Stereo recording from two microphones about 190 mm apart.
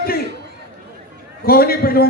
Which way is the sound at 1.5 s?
50° left (ahead or behind).